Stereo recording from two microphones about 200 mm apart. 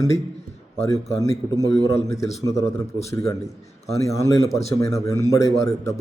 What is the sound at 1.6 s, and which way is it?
A man's voice, 15° left (ahead or behind).